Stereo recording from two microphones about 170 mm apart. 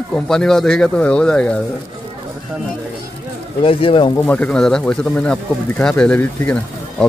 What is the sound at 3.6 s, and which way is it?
Speech, 30° left (ahead or behind).